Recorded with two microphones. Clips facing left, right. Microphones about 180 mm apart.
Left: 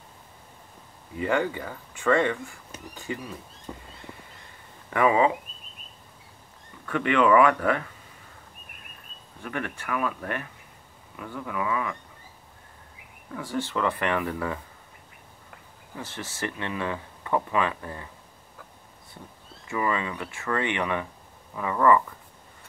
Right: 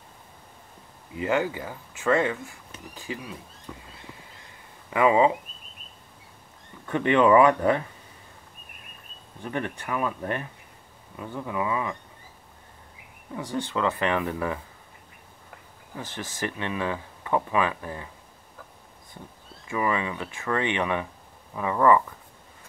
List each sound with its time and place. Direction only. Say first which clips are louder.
1.1 s speech: even; 15° right (ahead or behind)
3.7 s a sound: left 2 dB; 35° left (ahead or behind)
4.9 s speech: right 1 dB; 20° right (ahead or behind)
6.9 s speech: right 2 dB; 25° right (ahead or behind)
9.4 s speech: right 2 dB; 25° right (ahead or behind)
13.3 s speech: even; 20° right (ahead or behind)
16.2 s speech: right 1 dB; 15° right (ahead or behind)
19.7 s speech: right 1 dB; 15° right (ahead or behind)